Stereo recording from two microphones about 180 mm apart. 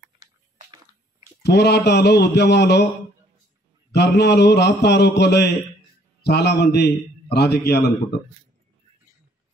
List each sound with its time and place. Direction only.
1.4 s a man's voice: 70° left (ahead or behind)
3.9 s a man's voice: 70° left (ahead or behind)